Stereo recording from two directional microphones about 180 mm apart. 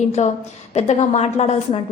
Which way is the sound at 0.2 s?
40° left (ahead or behind).